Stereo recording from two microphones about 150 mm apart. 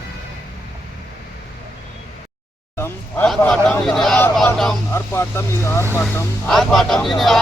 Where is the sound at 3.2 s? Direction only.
5° left (ahead or behind).